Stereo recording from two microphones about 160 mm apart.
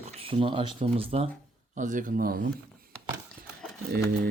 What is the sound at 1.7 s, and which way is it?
Speech, 50° right (ahead or behind).